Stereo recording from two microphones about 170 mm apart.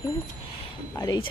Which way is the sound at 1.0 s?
25° left (ahead or behind).